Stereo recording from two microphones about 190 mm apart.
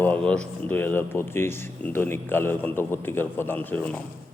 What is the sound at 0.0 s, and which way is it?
Speech, 10° left (ahead or behind).